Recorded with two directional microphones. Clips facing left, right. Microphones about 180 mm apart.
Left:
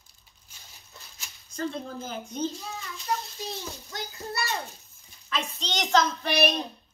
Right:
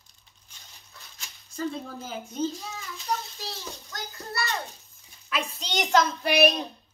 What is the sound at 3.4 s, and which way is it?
A child's voice, 20° left (ahead or behind).